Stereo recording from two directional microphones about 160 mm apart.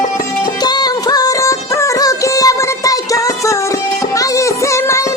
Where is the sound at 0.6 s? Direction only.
25° left (ahead or behind).